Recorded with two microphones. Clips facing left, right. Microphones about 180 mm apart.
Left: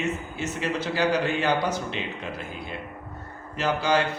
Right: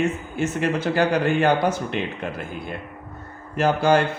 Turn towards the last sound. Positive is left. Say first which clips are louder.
# right 6 dB
turn(degrees=-50)  # may be behind; listen again after turning